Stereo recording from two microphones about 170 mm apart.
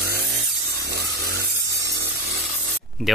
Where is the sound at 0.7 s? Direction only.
70° right (ahead or behind).